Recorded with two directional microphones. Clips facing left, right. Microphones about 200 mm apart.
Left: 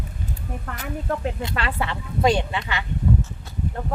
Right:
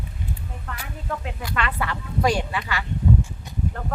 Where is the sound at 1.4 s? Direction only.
25° left (ahead or behind).